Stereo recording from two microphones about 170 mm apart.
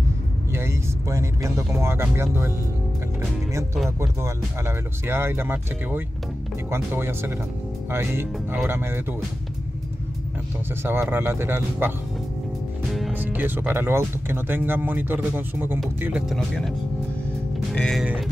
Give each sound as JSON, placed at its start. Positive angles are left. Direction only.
{"t": 0.5, "sound": "speech", "side_deg": -15}
{"t": 4.0, "sound": "speech", "side_deg": -15}
{"t": 10.8, "sound": "speech", "side_deg": -10}
{"t": 13.1, "sound": "speech", "side_deg": -10}
{"t": 16.3, "sound": "speech", "side_deg": 5}
{"t": 17.7, "sound": "speech", "side_deg": 5}
{"t": 18.0, "sound": "speech", "side_deg": -5}